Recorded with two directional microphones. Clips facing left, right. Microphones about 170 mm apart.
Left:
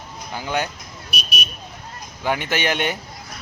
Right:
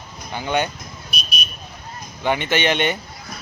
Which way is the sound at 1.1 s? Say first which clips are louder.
Left 2 dB; 80° left.